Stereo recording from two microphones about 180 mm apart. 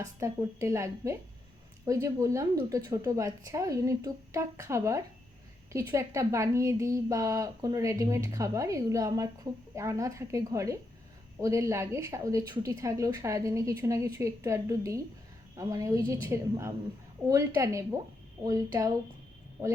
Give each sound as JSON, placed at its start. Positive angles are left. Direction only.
{"t": 0.2, "sound": "speech", "side_deg": -15}